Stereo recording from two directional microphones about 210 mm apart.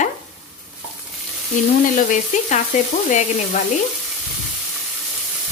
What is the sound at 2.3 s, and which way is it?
Speech, 35° left (ahead or behind).